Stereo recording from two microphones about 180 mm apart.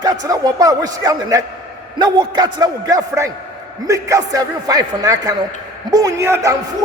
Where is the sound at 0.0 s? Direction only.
20° right (ahead or behind).